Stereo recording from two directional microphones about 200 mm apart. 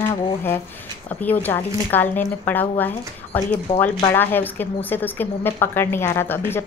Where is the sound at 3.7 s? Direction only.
30° left (ahead or behind).